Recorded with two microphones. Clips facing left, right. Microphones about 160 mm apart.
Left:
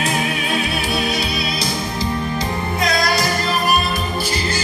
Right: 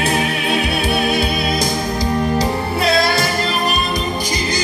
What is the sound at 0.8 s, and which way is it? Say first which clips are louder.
Music: right 4 dB; 55° right (ahead or behind).